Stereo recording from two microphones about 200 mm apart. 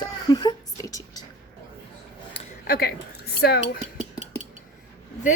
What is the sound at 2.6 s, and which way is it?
Speech, 45° left (ahead or behind).